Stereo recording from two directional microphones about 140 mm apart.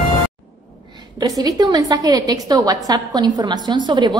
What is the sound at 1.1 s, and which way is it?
A woman's voice, 25° right (ahead or behind).